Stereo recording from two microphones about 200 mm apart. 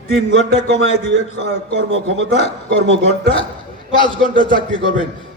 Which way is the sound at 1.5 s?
75° right (ahead or behind).